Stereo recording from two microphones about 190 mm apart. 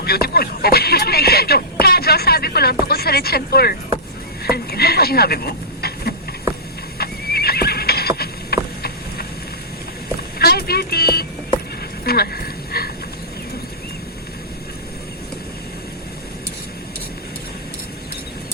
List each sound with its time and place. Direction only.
0.0 s speech: 55° left (ahead or behind)
7.0 s neigh: 55° left (ahead or behind)
10.3 s music: 55° left (ahead or behind)
12.0 s a sound: 55° left (ahead or behind)